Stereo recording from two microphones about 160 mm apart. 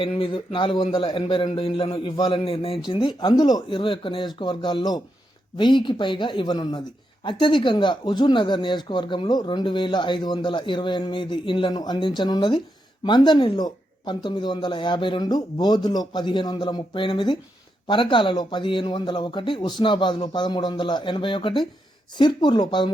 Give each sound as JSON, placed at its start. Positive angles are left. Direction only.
{"t": 0.0, "sound": "a man's voice", "side_deg": 35}